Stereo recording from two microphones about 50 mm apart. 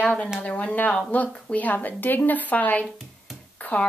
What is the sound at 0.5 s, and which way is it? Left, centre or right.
Speech, left.